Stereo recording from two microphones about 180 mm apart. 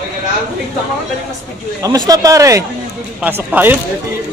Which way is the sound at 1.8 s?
20° right (ahead or behind).